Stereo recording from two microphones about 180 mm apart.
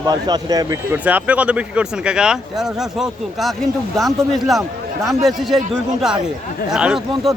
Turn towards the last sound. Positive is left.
turn(degrees=-5)  # may be behind; listen again after turning